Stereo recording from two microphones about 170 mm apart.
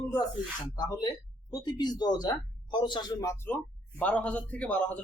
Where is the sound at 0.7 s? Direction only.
25° left (ahead or behind).